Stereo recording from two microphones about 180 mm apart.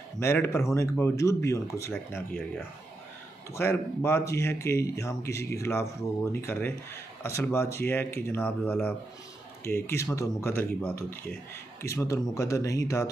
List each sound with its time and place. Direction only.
0.2 s speech: 15° left (ahead or behind)
3.5 s speech: 15° left (ahead or behind)